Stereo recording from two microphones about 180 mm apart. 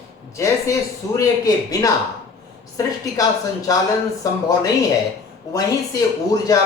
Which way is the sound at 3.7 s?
20° left (ahead or behind).